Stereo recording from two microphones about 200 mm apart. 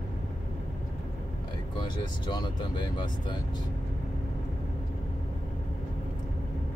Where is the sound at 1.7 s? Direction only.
20° left (ahead or behind).